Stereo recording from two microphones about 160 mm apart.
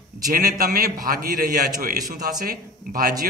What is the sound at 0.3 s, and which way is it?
A man's voice, 65° right (ahead or behind).